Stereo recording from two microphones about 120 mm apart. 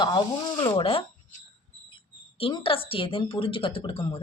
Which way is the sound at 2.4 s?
50° left (ahead or behind).